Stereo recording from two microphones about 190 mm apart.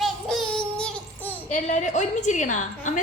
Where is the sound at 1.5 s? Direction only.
40° left (ahead or behind).